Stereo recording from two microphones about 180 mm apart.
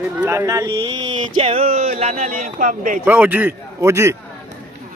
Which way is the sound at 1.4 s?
35° right (ahead or behind).